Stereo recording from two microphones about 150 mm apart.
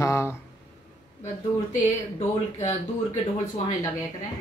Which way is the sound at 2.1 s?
50° left (ahead or behind).